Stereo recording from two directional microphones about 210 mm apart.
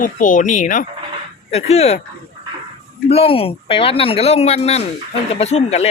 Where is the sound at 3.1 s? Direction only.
25° left (ahead or behind).